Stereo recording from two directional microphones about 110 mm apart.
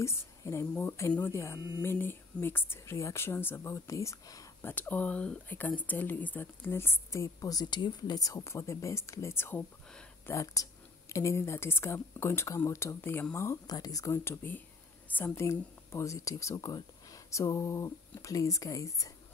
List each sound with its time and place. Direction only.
0.0 s speech: 25° left (ahead or behind)
4.6 s speech: 15° left (ahead or behind)